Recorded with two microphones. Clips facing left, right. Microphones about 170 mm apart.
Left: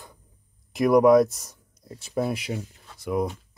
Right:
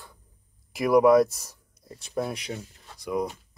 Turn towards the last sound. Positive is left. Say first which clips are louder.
# left 2 dB
turn(degrees=0)  # may be behind; listen again after turning